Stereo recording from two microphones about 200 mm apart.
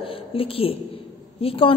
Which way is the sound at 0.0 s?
25° left (ahead or behind).